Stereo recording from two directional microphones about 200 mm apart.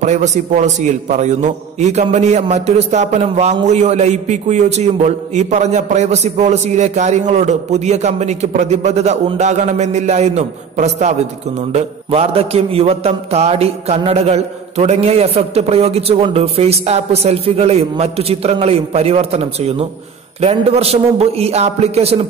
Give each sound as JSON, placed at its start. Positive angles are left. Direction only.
{"t": 0.0, "sound": "a man's voice", "side_deg": -35}